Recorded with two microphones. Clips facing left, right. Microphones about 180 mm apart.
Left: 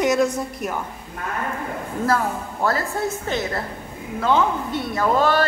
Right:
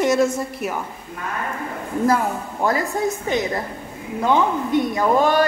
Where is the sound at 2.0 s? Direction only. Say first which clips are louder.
Right 2 dB; 15° right (ahead or behind).